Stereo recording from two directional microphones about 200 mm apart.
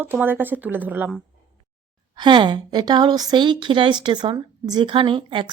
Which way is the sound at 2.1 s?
20° right (ahead or behind).